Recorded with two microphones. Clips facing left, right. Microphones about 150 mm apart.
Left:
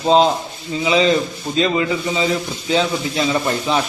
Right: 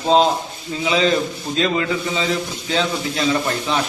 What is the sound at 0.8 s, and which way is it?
A man's voice, centre (ahead or behind).